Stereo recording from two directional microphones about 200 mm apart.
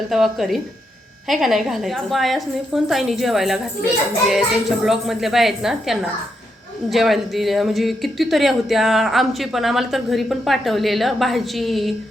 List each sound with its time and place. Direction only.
0.1 s speech: centre (ahead or behind)